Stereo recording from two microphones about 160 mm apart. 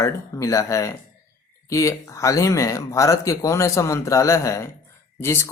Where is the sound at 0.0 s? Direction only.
20° left (ahead or behind).